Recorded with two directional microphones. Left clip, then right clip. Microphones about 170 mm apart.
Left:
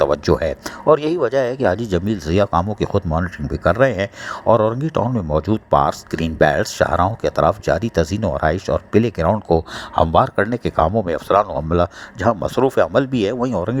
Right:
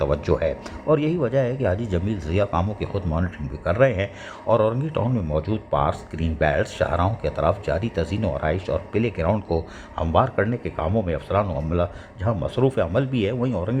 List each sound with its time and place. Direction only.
0.0 s speech: 40° left (ahead or behind)